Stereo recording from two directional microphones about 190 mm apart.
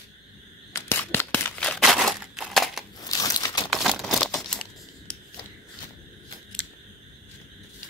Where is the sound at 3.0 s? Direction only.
20° left (ahead or behind).